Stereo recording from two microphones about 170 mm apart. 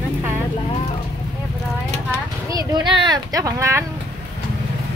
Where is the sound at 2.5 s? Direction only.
25° right (ahead or behind).